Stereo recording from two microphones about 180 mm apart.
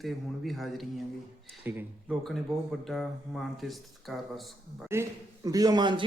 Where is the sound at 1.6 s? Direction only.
10° right (ahead or behind).